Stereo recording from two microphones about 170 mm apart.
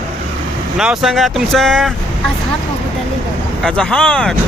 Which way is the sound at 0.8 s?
Centre (ahead or behind).